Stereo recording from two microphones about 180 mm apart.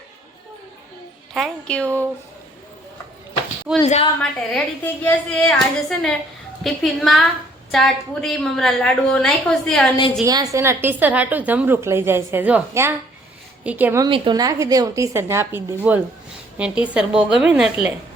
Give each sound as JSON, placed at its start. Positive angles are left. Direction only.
{"t": 1.3, "sound": "a woman's voice", "side_deg": 0}
{"t": 3.8, "sound": "a woman's voice", "side_deg": 35}
{"t": 4.2, "sound": "a woman's voice", "side_deg": 5}
{"t": 10.2, "sound": "a woman's voice", "side_deg": -20}
{"t": 14.0, "sound": "a woman's voice", "side_deg": -25}